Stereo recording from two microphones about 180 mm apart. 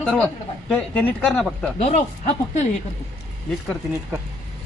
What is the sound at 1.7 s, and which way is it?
Speech, 40° left (ahead or behind).